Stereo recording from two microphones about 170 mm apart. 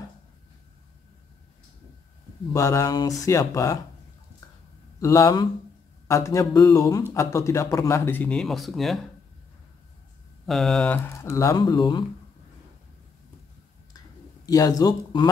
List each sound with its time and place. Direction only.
2.5 s speech: 20° left (ahead or behind)
5.0 s a man's voice: 20° left (ahead or behind); by 9.0 s centre (ahead or behind)
10.4 s a man's voice: centre (ahead or behind); by 12.0 s 25° left (ahead or behind)
14.5 s speech: 20° left (ahead or behind)